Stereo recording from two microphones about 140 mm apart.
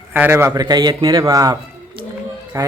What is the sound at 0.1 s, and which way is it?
A man's voice, 15° right (ahead or behind).